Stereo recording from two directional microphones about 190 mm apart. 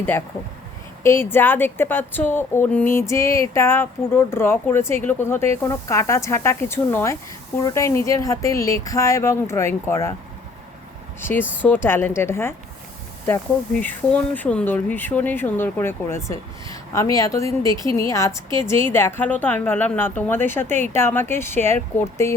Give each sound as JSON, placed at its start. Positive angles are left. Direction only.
{"t": 1.0, "sound": "a woman's voice", "side_deg": 10}
{"t": 11.2, "sound": "a woman's voice", "side_deg": 10}